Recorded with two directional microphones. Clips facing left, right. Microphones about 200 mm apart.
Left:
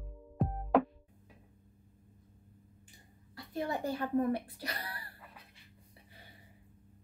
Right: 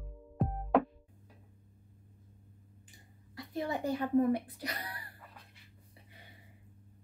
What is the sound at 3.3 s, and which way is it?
Speech, 20° right (ahead or behind).